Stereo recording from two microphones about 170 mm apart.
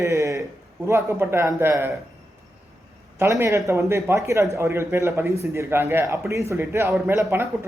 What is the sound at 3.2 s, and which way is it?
Speech, 15° right (ahead or behind).